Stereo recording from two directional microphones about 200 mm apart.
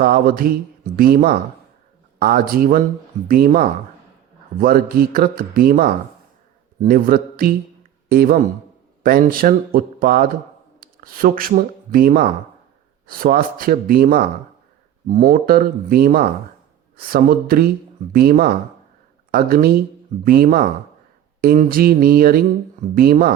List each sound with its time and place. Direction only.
0.0 s speech: 45° right (ahead or behind)